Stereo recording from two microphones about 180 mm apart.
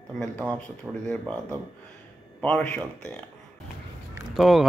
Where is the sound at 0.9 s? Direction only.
10° right (ahead or behind).